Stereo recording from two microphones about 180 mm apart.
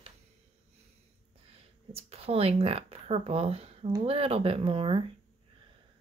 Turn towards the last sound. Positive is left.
turn(degrees=-30)  # may be behind; listen again after turning